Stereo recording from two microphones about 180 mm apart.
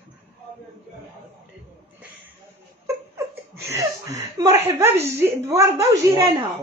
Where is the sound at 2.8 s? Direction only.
15° right (ahead or behind).